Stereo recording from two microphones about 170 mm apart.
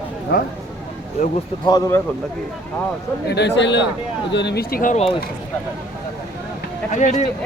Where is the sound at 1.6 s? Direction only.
20° left (ahead or behind).